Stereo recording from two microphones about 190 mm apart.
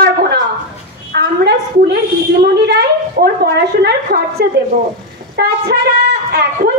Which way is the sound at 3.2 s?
55° right (ahead or behind).